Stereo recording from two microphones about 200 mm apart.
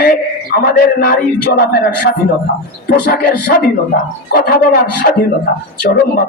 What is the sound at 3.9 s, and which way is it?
A man's voice, 50° left (ahead or behind).